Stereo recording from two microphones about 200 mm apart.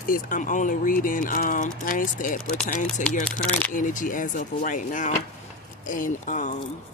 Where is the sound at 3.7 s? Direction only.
40° left (ahead or behind).